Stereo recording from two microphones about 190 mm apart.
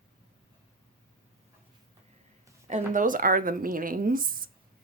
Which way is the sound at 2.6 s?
40° right (ahead or behind).